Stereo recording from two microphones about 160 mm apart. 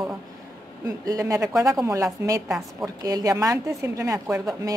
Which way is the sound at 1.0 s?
20° right (ahead or behind).